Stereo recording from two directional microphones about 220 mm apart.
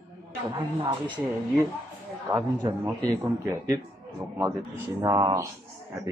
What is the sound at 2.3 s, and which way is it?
Speech, 15° right (ahead or behind).